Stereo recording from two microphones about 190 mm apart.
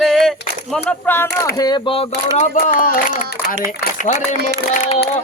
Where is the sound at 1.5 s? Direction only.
20° left (ahead or behind).